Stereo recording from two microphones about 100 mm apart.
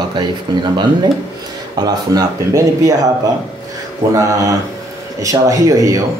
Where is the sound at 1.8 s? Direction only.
40° right (ahead or behind).